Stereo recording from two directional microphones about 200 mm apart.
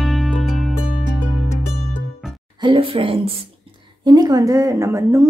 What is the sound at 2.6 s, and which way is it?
A woman's voice, 25° right (ahead or behind).